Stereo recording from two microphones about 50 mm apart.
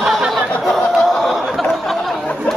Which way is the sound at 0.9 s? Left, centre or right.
Centre.